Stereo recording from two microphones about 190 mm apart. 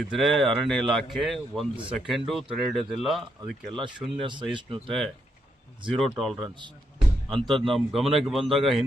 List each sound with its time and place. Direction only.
0.1 s speech: centre (ahead or behind)
4.2 s speech: 25° right (ahead or behind)
6.0 s speech: centre (ahead or behind)
6.4 s speech: 25° right (ahead or behind)
7.3 s speech: centre (ahead or behind)